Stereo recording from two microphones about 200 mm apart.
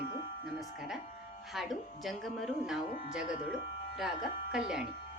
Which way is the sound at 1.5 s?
Centre (ahead or behind).